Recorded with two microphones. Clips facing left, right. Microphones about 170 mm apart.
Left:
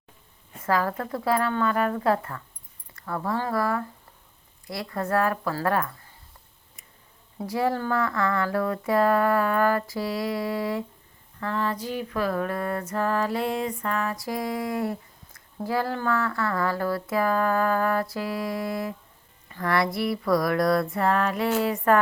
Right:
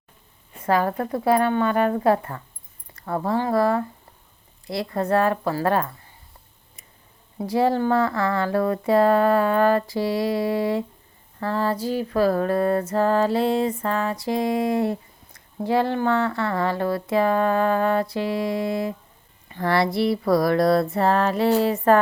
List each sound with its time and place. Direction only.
0.6 s speech: 25° right (ahead or behind)
7.4 s speech: 25° right (ahead or behind)